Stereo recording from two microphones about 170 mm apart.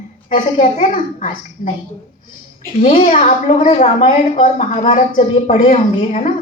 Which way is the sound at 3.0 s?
45° left (ahead or behind).